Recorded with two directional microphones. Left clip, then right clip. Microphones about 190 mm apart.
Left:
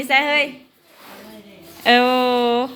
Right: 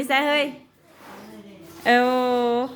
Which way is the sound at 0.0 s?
20° right (ahead or behind).